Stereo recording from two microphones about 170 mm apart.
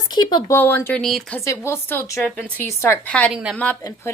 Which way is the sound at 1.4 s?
15° left (ahead or behind).